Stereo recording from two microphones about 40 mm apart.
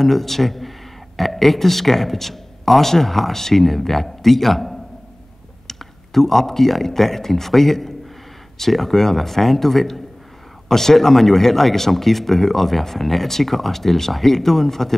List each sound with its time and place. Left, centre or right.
0.0 s speech: centre